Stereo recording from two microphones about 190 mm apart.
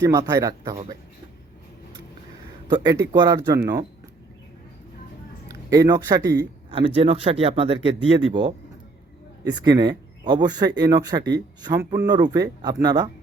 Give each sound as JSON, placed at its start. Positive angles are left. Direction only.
{"t": 0.0, "sound": "speech", "side_deg": -20}
{"t": 2.6, "sound": "speech", "side_deg": -25}
{"t": 5.5, "sound": "speech", "side_deg": -20}
{"t": 6.7, "sound": "speech", "side_deg": -30}
{"t": 9.6, "sound": "speech", "side_deg": -20}